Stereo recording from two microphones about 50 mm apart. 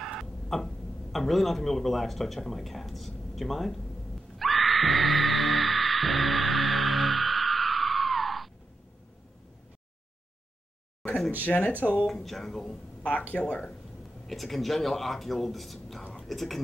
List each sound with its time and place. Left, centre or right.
0.0 s speech: centre
4.4 s music: centre
11.4 s speech: left
12.1 s speech: centre
13.3 s speech: left
14.2 s speech: centre